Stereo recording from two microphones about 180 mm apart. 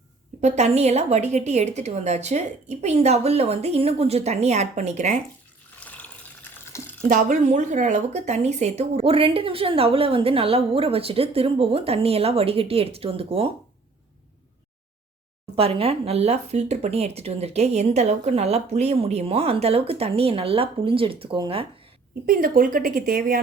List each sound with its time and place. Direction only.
0.4 s speech: 40° right (ahead or behind)
5.8 s water: 5° left (ahead or behind)
7.1 s speech: 45° right (ahead or behind)
15.5 s speech: 30° right (ahead or behind)
22.3 s speech: 50° right (ahead or behind)